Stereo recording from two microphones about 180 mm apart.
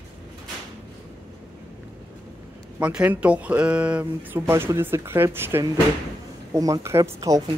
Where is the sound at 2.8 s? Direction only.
10° right (ahead or behind).